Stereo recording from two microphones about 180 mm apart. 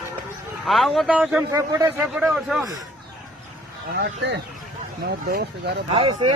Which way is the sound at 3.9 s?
70° right (ahead or behind).